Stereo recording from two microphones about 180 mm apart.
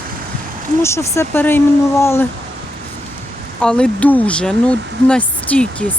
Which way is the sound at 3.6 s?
5° left (ahead or behind).